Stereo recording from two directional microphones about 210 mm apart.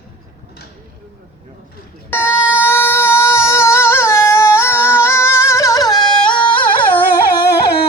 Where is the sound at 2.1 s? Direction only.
10° left (ahead or behind).